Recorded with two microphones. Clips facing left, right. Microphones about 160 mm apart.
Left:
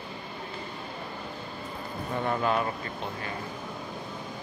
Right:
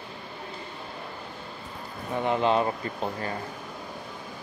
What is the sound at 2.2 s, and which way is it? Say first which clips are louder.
Speech: right 4 dB; 20° right (ahead or behind).